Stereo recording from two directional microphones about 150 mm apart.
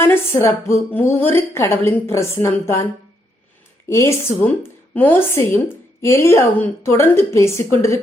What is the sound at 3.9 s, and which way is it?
A woman's voice, 20° left (ahead or behind).